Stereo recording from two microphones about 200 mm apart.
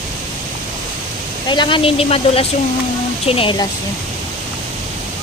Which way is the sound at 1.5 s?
25° left (ahead or behind).